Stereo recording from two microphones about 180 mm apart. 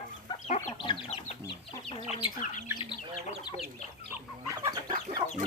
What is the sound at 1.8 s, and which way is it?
Chicken, 35° left (ahead or behind).